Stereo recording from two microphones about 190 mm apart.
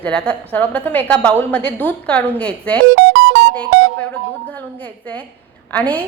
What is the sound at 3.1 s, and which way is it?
Music, 80° right.